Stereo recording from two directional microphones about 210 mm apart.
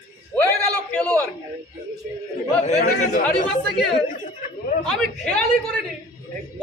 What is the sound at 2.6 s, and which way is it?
Chatter, 35° left (ahead or behind).